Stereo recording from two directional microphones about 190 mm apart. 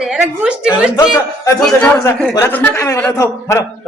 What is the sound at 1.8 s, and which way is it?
A woman's voice, 10° left (ahead or behind).